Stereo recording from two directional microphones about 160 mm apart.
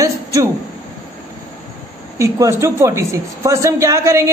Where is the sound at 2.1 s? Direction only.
20° right (ahead or behind).